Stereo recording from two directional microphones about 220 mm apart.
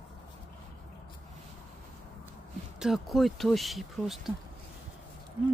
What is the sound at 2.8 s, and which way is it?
Speech, centre (ahead or behind).